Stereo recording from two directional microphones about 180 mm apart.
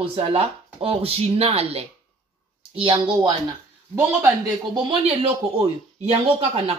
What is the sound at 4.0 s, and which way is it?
Speech, 15° right (ahead or behind).